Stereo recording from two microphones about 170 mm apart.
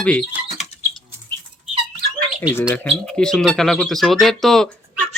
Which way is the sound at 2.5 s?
10° left (ahead or behind).